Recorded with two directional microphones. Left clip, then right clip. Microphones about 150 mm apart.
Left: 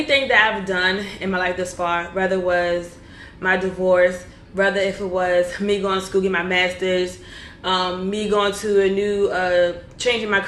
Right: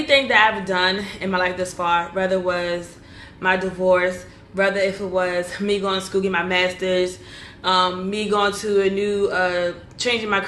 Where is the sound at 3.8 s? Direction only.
20° right (ahead or behind).